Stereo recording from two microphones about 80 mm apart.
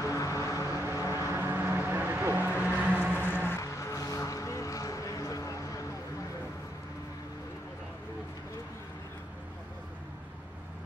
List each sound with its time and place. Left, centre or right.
0.0 s vehicle: left
0.7 s vehicle: right
3.3 s music: left
3.6 s music: left